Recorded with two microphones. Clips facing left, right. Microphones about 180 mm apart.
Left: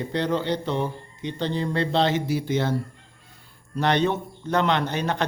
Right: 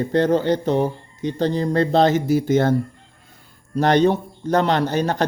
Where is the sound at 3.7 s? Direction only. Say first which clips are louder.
Right 6 dB; 40° right (ahead or behind).